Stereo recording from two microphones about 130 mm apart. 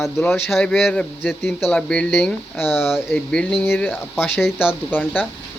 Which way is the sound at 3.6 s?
15° left (ahead or behind).